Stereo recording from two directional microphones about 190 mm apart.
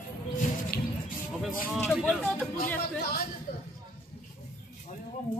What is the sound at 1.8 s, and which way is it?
Speech, 5° left (ahead or behind).